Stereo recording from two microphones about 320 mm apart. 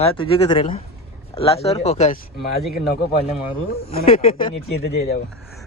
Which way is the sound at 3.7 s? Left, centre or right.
Left.